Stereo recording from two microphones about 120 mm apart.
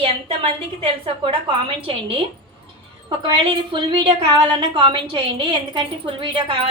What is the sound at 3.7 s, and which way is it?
A woman's voice, 40° right (ahead or behind).